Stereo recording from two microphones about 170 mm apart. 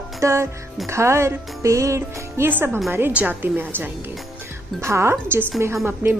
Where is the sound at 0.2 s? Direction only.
15° right (ahead or behind).